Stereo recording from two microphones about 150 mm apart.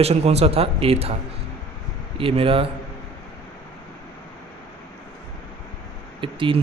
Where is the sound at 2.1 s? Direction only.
35° right (ahead or behind).